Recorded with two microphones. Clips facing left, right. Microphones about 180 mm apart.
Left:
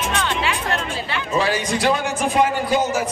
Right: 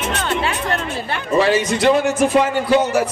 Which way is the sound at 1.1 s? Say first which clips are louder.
Right 5 dB; 60° right (ahead or behind).